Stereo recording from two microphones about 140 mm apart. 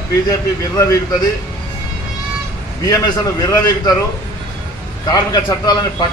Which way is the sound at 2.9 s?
25° left (ahead or behind).